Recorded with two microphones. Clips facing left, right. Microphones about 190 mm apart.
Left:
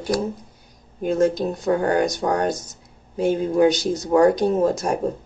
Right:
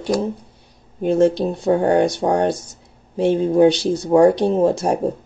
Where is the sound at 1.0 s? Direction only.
30° right (ahead or behind).